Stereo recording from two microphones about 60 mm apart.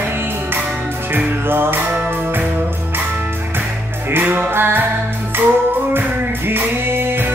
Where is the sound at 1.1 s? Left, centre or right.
Right.